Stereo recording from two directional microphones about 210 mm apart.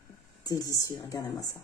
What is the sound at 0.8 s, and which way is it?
Speech, 15° left (ahead or behind).